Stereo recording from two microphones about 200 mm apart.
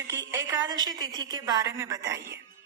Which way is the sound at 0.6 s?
20° right (ahead or behind).